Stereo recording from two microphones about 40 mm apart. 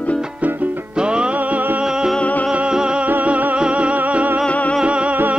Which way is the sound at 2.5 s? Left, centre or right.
Right.